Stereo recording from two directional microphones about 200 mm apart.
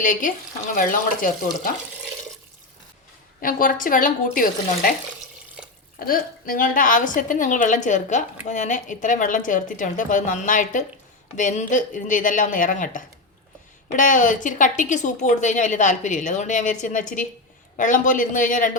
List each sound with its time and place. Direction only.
0.0 s a woman's voice: 40° left (ahead or behind)
3.4 s a woman's voice: 45° left (ahead or behind)
5.6 s drip: 5° right (ahead or behind)
6.1 s a woman's voice: 45° left (ahead or behind)